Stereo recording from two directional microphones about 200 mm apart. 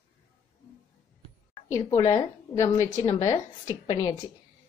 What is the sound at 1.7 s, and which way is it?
A woman's voice, 15° left (ahead or behind).